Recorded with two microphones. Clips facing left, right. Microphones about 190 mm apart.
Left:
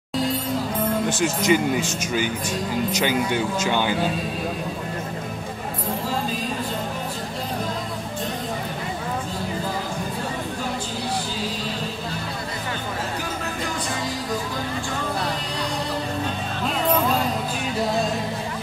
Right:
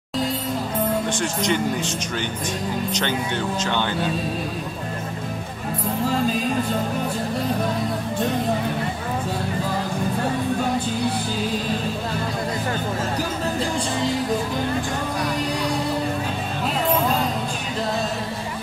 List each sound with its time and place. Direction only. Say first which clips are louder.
1.0 s speech: left 2 dB; 5° left (ahead or behind)